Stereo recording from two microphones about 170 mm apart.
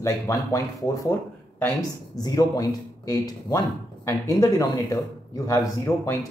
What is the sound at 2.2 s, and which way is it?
A man's voice, 20° left (ahead or behind).